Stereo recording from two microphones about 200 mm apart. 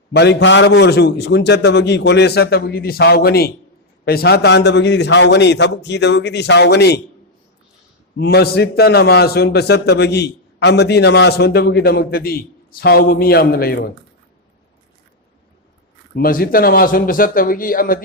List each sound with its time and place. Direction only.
0.1 s a man's voice: 60° left (ahead or behind)
8.2 s a man's voice: 55° left (ahead or behind)
16.1 s a man's voice: 45° left (ahead or behind)